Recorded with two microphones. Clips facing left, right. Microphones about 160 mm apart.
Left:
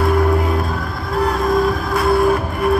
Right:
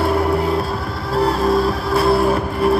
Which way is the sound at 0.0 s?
30° right (ahead or behind).